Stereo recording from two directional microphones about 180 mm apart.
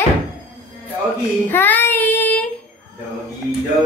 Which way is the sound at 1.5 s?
10° left (ahead or behind).